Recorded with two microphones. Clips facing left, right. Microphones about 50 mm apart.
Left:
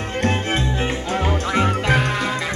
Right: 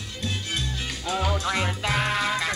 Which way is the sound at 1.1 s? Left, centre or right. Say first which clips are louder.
Left 3 dB; left.